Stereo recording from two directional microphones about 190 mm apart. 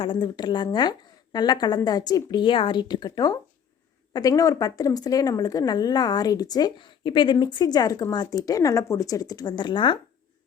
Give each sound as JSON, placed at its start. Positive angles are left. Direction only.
{"t": 0.0, "sound": "speech", "side_deg": 25}